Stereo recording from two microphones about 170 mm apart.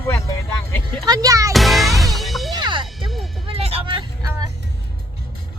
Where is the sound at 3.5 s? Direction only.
35° right (ahead or behind).